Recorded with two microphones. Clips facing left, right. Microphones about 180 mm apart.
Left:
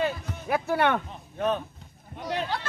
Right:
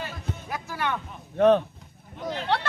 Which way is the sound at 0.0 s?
60° left (ahead or behind).